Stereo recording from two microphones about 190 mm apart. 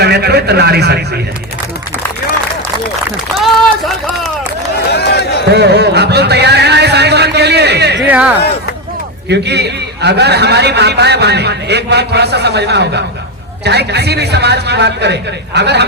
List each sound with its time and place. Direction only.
0.0 s a man's voice: 60° right (ahead or behind)
3.3 s run: centre (ahead or behind)
4.9 s run: 60° left (ahead or behind)
5.5 s music: 60° right (ahead or behind)
8.0 s speech: 10° right (ahead or behind)
9.3 s a man's voice: 60° right (ahead or behind)